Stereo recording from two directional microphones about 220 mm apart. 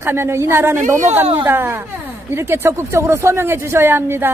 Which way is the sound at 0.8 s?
35° right (ahead or behind).